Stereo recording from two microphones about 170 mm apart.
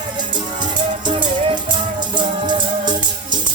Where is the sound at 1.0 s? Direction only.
25° right (ahead or behind).